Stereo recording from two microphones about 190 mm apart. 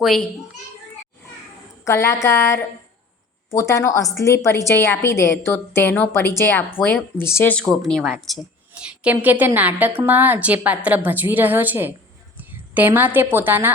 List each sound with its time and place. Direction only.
0.0 s speech: centre (ahead or behind)
1.8 s a woman's voice: 15° left (ahead or behind); by 11.9 s 10° right (ahead or behind)
12.4 s a sound: 10° right (ahead or behind)
13.3 s a woman's voice: 10° right (ahead or behind)